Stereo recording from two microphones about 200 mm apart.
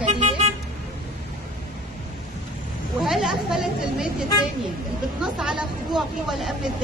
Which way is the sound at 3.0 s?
Centre (ahead or behind).